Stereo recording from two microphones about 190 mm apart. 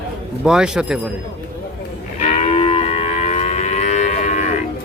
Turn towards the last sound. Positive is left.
turn(degrees=35)  # may be behind; listen again after turning